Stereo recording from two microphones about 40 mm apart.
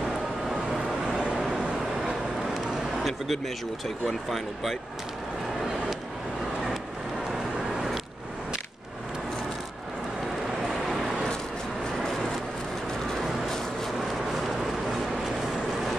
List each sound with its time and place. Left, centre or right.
1.0 s vehicle: right
2.0 s speech: centre
10.7 s vehicle: centre